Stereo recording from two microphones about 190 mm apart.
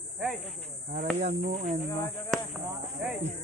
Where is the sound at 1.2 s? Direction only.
35° right (ahead or behind).